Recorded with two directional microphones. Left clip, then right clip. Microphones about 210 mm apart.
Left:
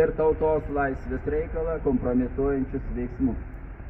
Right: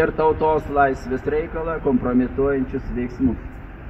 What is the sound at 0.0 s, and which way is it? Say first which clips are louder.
Speech: right 4 dB; 55° right (ahead or behind).